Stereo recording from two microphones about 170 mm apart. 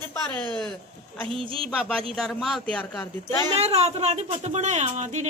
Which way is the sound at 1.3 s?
30° right (ahead or behind).